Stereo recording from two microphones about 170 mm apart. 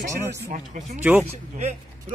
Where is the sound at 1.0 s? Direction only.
10° right (ahead or behind).